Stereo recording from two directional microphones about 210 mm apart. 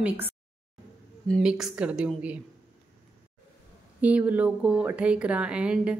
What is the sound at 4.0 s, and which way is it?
Speech, 5° right (ahead or behind).